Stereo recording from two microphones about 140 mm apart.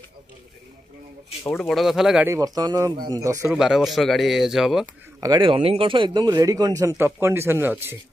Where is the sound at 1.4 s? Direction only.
15° left (ahead or behind).